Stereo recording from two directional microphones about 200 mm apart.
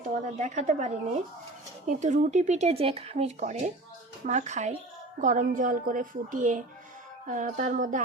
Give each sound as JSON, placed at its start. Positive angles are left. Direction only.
{"t": 0.0, "sound": "a woman's voice", "side_deg": -40}